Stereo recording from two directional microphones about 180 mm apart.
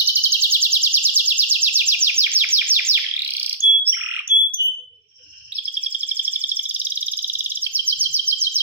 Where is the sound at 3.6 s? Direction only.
40° right (ahead or behind).